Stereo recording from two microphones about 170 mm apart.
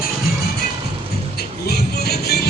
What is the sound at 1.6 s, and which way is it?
Music, 70° left (ahead or behind).